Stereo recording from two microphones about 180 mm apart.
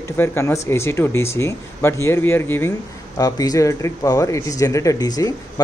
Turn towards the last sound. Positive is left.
turn(degrees=20)  # may be behind; listen again after turning